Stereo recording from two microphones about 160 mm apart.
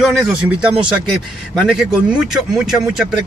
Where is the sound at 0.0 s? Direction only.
5° right (ahead or behind).